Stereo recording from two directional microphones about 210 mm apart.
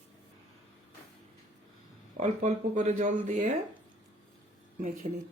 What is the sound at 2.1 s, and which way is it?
Speech, 35° right (ahead or behind).